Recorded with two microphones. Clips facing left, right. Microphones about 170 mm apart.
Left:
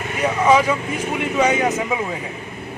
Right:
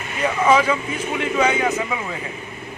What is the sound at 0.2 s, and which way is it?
Speech, 15° left (ahead or behind).